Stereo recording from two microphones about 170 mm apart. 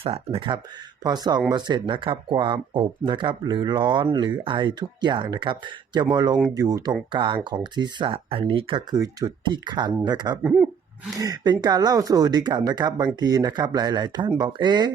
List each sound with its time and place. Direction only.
0.0 s speech: 35° right (ahead or behind)
10.4 s a sound: 5° right (ahead or behind)
11.2 s speech: 25° right (ahead or behind)